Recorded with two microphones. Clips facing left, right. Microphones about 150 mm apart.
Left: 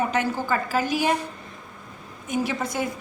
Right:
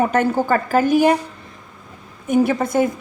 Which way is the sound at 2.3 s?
55° right (ahead or behind).